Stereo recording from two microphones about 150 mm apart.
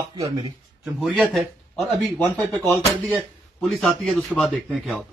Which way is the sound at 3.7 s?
Centre (ahead or behind).